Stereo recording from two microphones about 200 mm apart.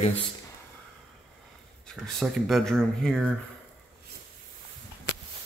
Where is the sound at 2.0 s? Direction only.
Centre (ahead or behind).